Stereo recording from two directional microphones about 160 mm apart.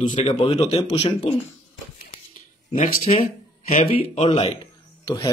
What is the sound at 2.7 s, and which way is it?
Speech, 40° left (ahead or behind).